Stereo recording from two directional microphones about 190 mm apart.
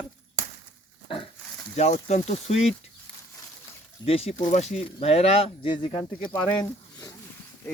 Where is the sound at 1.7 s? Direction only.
35° left (ahead or behind).